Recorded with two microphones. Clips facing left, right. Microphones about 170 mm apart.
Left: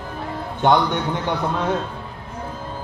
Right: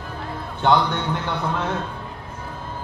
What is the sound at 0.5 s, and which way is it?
Speech, 15° left (ahead or behind).